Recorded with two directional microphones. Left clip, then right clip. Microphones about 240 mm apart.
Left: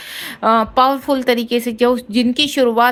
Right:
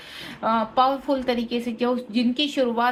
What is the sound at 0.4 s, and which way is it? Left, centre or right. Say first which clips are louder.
A woman's voice: left 7 dB; left.